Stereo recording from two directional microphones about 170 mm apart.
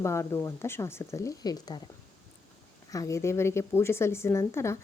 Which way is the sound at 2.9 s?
20° left (ahead or behind).